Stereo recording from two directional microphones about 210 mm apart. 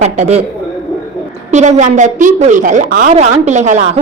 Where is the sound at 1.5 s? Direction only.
35° right (ahead or behind).